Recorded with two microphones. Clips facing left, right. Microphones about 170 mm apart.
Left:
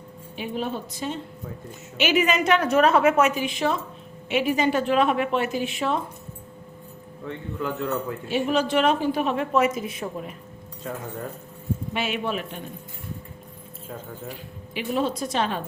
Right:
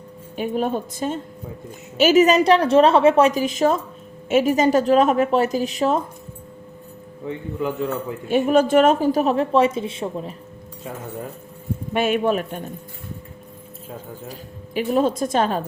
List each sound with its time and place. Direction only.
0.3 s a woman's voice: 45° right (ahead or behind)
7.3 s a man's voice: 10° right (ahead or behind)
8.3 s a woman's voice: 50° right (ahead or behind); by 10.3 s 30° right (ahead or behind)
11.9 s speech: 50° right (ahead or behind)
14.3 s speech: 45° right (ahead or behind)